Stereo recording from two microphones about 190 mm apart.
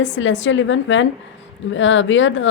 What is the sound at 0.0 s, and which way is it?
A woman's voice, 80° left.